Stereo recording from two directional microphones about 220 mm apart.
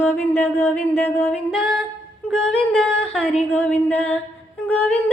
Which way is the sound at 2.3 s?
5° left (ahead or behind).